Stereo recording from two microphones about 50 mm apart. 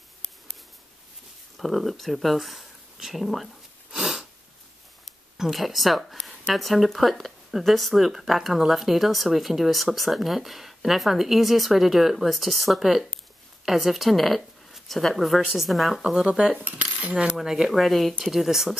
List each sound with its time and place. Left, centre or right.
1.6 s speech: centre
4.0 s sneeze: centre
5.4 s speech: centre
17.0 s coin: right
17.4 s speech: centre